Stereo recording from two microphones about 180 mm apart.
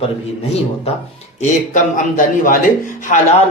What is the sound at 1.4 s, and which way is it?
A man's voice, 45° left (ahead or behind).